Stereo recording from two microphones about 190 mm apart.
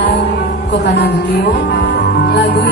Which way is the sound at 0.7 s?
60° left (ahead or behind).